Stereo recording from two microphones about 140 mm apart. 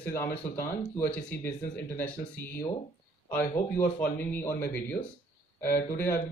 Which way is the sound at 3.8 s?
15° left (ahead or behind).